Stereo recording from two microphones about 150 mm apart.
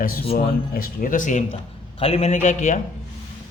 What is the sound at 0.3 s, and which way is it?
Speech, 80° left.